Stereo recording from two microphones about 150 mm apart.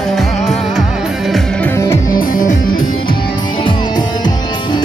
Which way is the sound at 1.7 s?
20° left (ahead or behind).